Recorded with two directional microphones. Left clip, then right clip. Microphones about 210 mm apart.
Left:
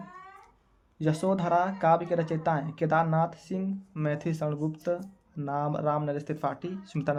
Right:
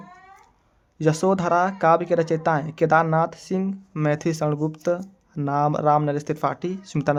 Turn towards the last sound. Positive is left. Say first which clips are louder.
# right 7 dB
turn(degrees=-45)  # may be behind; listen again after turning